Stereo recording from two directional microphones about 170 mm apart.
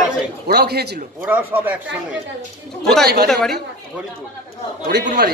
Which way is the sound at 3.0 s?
70° right (ahead or behind).